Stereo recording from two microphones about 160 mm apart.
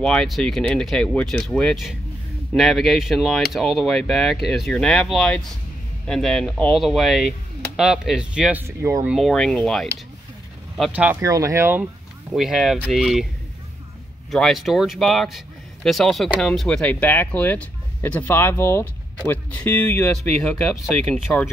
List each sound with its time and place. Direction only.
0.0 s speech: 5° left (ahead or behind); by 9.1 s 15° right (ahead or behind)
9.1 s speech: centre (ahead or behind)
10.9 s speech: 10° right (ahead or behind)
11.2 s speech: 20° right (ahead or behind)
12.4 s speech: centre (ahead or behind)
14.3 s speech: centre (ahead or behind)